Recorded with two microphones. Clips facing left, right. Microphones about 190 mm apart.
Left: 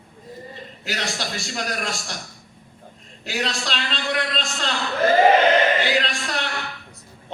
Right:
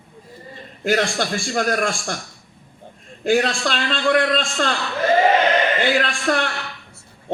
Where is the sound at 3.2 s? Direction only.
50° right (ahead or behind).